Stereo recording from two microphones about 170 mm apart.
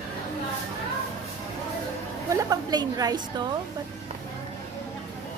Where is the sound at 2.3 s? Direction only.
20° right (ahead or behind).